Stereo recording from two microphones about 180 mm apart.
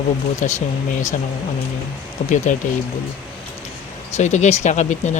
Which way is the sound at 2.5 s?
45° left (ahead or behind).